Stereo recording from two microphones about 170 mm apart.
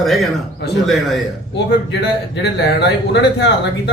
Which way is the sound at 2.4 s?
85° left.